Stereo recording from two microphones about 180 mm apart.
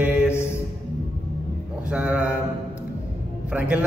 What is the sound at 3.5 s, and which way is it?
Speech, 5° right (ahead or behind).